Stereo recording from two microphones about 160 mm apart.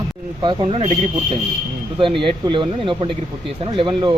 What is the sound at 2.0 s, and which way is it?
Speech, 30° right (ahead or behind).